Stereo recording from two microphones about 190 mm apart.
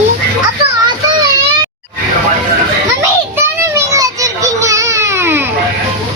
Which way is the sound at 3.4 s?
15° right (ahead or behind).